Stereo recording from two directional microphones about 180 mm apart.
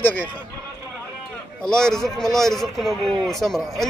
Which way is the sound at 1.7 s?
5° left (ahead or behind).